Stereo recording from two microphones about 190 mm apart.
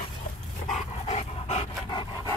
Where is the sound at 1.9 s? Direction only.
20° left (ahead or behind).